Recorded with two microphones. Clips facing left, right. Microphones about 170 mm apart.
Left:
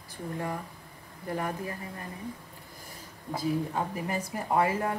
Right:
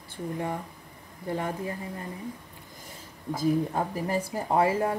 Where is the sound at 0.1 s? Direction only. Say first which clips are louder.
Right 3 dB; 20° right (ahead or behind).